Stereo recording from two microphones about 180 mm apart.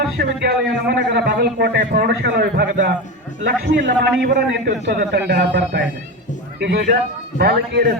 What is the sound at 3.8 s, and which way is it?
A man's voice, 65° right (ahead or behind).